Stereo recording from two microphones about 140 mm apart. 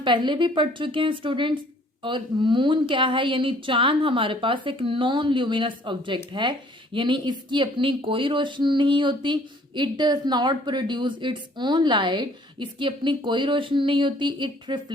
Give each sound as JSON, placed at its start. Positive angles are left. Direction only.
{"t": 0.0, "sound": "speech", "side_deg": -35}